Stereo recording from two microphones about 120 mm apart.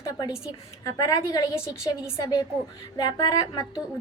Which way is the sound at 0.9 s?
30° left (ahead or behind).